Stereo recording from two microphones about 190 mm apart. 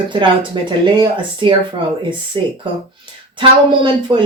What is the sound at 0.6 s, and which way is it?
Speech, 25° right (ahead or behind).